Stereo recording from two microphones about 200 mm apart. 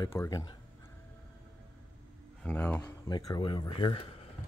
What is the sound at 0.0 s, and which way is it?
Speech, 15° left (ahead or behind).